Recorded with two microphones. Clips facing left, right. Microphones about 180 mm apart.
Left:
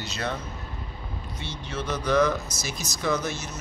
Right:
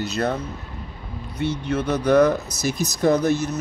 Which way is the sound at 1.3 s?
60° right (ahead or behind).